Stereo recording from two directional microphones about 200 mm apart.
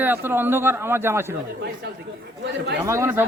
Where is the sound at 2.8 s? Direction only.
15° right (ahead or behind).